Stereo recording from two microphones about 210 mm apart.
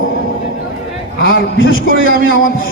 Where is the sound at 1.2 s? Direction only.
65° left (ahead or behind).